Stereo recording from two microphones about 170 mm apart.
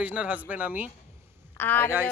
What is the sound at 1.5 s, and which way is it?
Speech, 10° left (ahead or behind).